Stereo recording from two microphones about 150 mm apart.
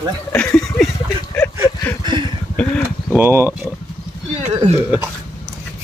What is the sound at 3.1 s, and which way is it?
Speech, 15° right (ahead or behind).